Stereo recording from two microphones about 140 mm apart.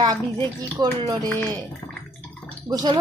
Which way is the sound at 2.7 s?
30° right (ahead or behind).